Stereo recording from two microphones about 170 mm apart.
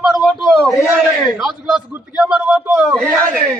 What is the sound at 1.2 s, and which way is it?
A man's voice, centre (ahead or behind).